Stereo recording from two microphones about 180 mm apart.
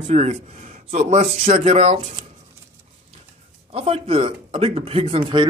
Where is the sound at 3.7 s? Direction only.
35° right (ahead or behind).